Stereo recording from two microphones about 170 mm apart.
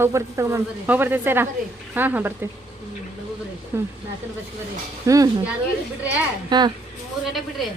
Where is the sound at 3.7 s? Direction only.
15° right (ahead or behind).